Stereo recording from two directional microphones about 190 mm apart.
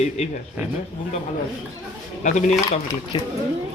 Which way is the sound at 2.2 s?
40° left (ahead or behind).